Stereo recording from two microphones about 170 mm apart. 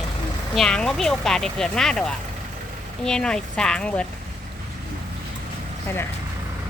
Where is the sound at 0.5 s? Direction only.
5° left (ahead or behind).